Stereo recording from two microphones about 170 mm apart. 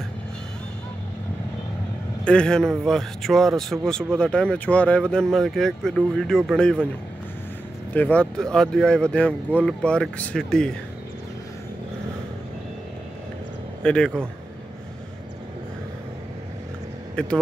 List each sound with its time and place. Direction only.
2.2 s speech: 5° left (ahead or behind)
7.9 s speech: 10° left (ahead or behind)
13.8 s speech: 5° left (ahead or behind)
17.1 s speech: 5° left (ahead or behind)